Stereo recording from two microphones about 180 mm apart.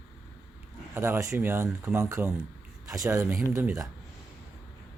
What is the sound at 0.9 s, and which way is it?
Speech, 15° right (ahead or behind).